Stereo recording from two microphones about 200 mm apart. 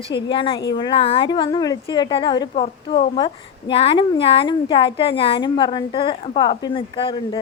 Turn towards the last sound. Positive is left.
turn(degrees=25)  # may be behind; listen again after turning